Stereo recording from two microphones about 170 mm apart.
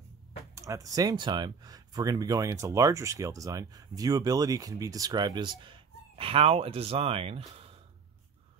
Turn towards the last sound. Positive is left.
turn(degrees=-35)  # may be behind; listen again after turning